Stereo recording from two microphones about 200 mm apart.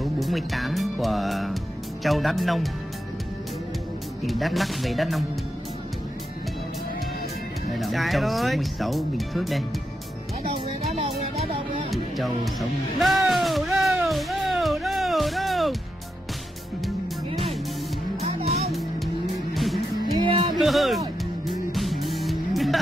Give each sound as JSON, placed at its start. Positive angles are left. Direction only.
{"t": 0.0, "sound": "speech", "side_deg": 0}
{"t": 4.3, "sound": "speech", "side_deg": 0}
{"t": 7.7, "sound": "speech", "side_deg": 0}
{"t": 11.0, "sound": "music", "side_deg": -30}
{"t": 11.9, "sound": "music", "side_deg": 0}
{"t": 19.5, "sound": "music", "side_deg": 0}
{"t": 20.2, "sound": "music", "side_deg": -25}
{"t": 20.5, "sound": "music", "side_deg": 0}